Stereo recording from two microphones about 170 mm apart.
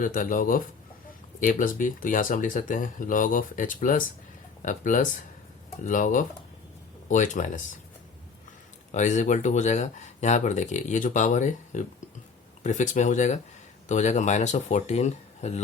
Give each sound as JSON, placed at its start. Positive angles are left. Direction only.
{"t": 0.0, "sound": "speech", "side_deg": 50}
{"t": 8.9, "sound": "speech", "side_deg": 45}